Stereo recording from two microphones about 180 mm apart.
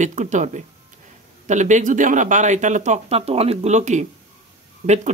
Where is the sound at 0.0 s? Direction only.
40° right (ahead or behind).